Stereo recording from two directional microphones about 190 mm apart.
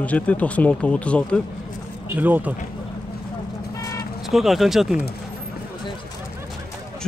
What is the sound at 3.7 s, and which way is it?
Vehicle, 15° left (ahead or behind).